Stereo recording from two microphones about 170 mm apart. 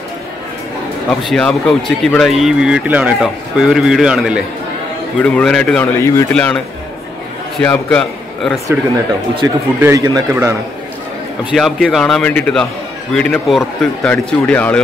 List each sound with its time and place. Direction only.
1.2 s speech: 5° left (ahead or behind)
5.9 s a man's voice: 15° left (ahead or behind)
6.3 s speech: 5° left (ahead or behind)
7.6 s a man's voice: 10° left (ahead or behind)
9.4 s speech: 20° right (ahead or behind)
11.5 s a man's voice: centre (ahead or behind)